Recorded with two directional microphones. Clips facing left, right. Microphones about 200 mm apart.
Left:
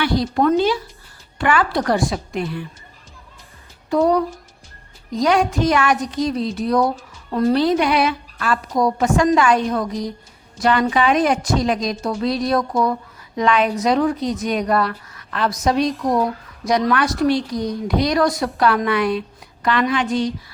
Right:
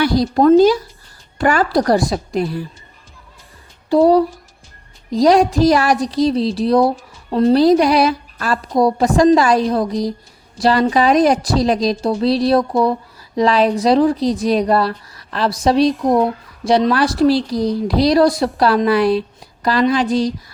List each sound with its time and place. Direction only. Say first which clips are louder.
0.0 s a woman's voice: right 5 dB; 35° right (ahead or behind)
3.8 s a woman's voice: right 5 dB; 30° right (ahead or behind)